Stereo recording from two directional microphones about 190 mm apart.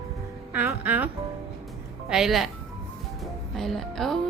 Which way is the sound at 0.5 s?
10° right (ahead or behind).